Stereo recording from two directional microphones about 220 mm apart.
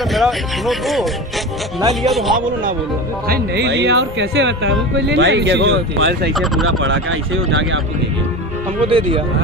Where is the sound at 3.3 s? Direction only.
50° right (ahead or behind).